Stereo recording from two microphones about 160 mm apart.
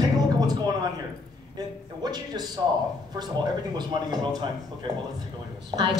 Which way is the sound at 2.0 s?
25° right (ahead or behind).